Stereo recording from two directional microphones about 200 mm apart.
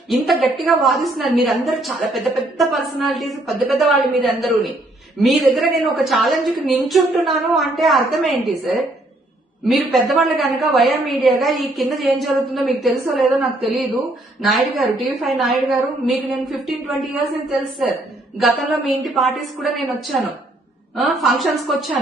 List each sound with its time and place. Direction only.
0.1 s a woman's voice: centre (ahead or behind)
14.5 s a woman's voice: centre (ahead or behind)
18.3 s a woman's voice: centre (ahead or behind)